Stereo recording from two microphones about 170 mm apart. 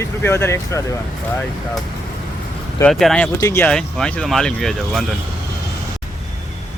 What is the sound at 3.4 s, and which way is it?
Speech, 15° left (ahead or behind).